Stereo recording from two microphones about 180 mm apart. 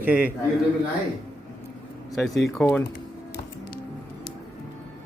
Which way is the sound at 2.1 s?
Centre (ahead or behind).